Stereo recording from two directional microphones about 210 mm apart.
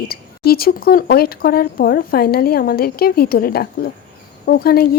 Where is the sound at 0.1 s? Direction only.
45° left (ahead or behind).